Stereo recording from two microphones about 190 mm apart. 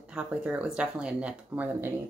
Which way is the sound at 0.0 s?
5° right (ahead or behind).